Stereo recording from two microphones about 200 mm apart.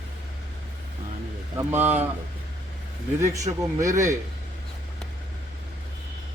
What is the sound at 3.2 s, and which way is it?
A man's voice, 15° right (ahead or behind).